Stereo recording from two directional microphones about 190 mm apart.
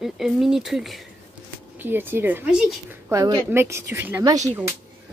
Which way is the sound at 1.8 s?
10° right (ahead or behind).